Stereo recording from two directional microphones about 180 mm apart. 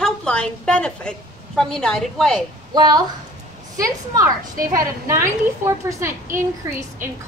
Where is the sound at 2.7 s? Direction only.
20° right (ahead or behind).